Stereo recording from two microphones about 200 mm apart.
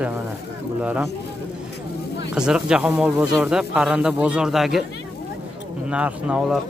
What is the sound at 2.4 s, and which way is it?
Speech, 5° right (ahead or behind).